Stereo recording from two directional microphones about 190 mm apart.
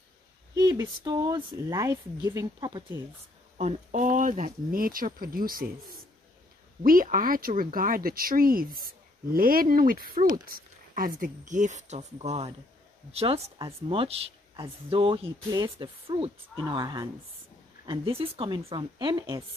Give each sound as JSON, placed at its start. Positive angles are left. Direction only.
{"t": 0.6, "sound": "speech", "side_deg": -20}
{"t": 3.5, "sound": "speech", "side_deg": -35}